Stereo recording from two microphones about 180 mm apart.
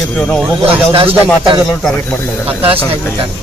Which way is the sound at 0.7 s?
30° right (ahead or behind).